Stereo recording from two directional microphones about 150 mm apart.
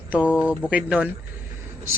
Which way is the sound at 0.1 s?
10° right (ahead or behind).